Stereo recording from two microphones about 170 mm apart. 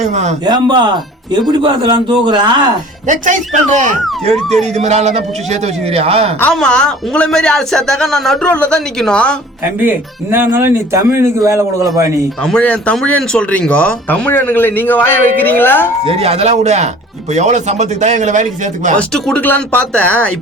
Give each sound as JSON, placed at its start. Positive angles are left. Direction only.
{"t": 0.0, "sound": "speech", "side_deg": -45}
{"t": 0.4, "sound": "speech", "side_deg": -25}
{"t": 3.1, "sound": "speech", "side_deg": -45}
{"t": 6.4, "sound": "a man's voice", "side_deg": 5}
{"t": 9.7, "sound": "speech", "side_deg": -10}
{"t": 12.4, "sound": "speech", "side_deg": 5}
{"t": 16.0, "sound": "speech", "side_deg": -35}
{"t": 18.9, "sound": "speech", "side_deg": 5}